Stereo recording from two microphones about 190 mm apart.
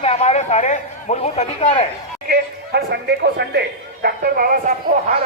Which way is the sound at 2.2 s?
55° right (ahead or behind).